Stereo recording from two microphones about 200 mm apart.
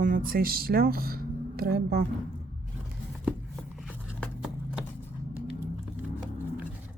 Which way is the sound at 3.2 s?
Centre (ahead or behind).